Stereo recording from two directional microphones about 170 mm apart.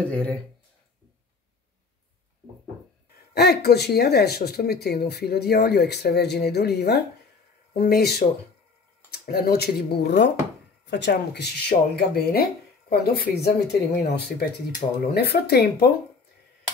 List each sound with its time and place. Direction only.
0.0 s speech: 5° left (ahead or behind)
3.3 s speech: 70° left (ahead or behind)
9.1 s speech: 65° left (ahead or behind)